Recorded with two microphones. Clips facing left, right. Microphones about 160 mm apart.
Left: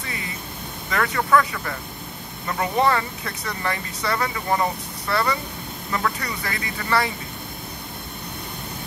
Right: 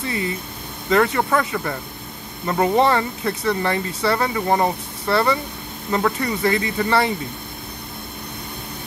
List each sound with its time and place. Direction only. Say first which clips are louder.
0.8 s speech: right 6 dB; 30° right (ahead or behind)